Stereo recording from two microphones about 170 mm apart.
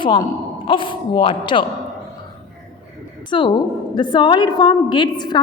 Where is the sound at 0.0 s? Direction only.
30° left (ahead or behind).